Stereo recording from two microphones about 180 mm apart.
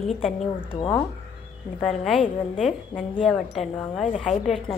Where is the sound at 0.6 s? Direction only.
25° left (ahead or behind).